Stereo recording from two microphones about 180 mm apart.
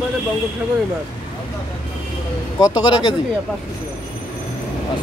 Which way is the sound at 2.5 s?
20° left (ahead or behind).